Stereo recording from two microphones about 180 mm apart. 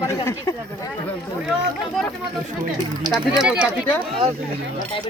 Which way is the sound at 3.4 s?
5° right (ahead or behind).